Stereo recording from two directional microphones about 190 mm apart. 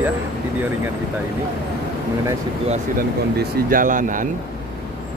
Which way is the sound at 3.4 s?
45° right (ahead or behind).